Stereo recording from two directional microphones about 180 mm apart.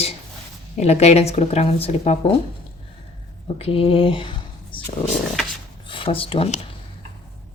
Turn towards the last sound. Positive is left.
turn(degrees=30)  # may be behind; listen again after turning